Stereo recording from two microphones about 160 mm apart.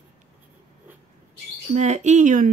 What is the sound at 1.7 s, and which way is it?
Speech, 45° right (ahead or behind).